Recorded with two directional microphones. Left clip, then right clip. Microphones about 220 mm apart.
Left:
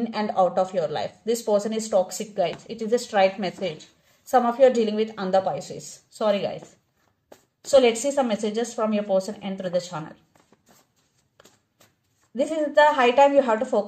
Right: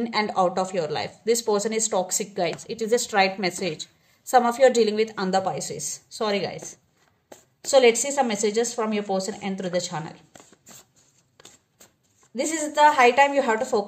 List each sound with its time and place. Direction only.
0.0 s speech: 40° right (ahead or behind)
7.6 s speech: 40° right (ahead or behind)
13.0 s a woman's voice: 40° right (ahead or behind)